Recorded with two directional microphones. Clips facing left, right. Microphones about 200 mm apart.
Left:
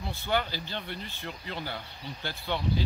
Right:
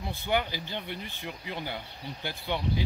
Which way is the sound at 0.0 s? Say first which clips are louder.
Right 1 dB; 15° right (ahead or behind).